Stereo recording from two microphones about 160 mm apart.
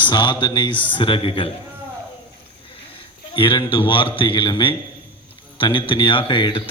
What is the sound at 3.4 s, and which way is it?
Speech, 30° left (ahead or behind).